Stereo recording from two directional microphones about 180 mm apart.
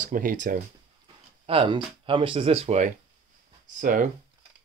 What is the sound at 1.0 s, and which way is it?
Speech, 30° right (ahead or behind).